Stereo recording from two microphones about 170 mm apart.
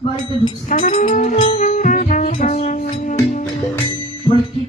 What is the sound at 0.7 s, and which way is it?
Music, 45° left (ahead or behind).